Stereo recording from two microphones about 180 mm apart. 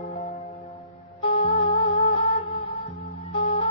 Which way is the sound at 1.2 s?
30° left (ahead or behind).